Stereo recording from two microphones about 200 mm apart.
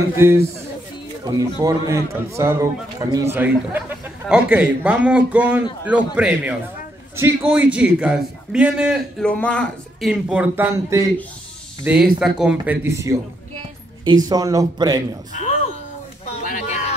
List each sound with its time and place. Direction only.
0.1 s a man's voice: 10° right (ahead or behind)
14.0 s speech: 20° right (ahead or behind)
16.4 s a sound: 40° left (ahead or behind)